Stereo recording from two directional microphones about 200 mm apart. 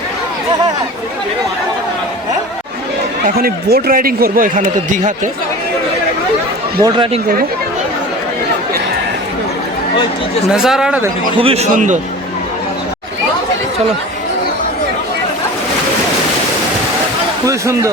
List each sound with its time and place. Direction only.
3.2 s a man's voice: 50° right (ahead or behind)
6.8 s speech: 25° right (ahead or behind)
10.5 s speech: centre (ahead or behind)
11.3 s a man's voice: 30° right (ahead or behind)
17.4 s speech: 15° right (ahead or behind)